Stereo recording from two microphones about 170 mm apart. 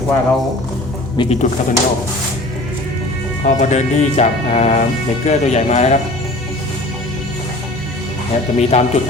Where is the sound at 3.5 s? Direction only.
45° left (ahead or behind).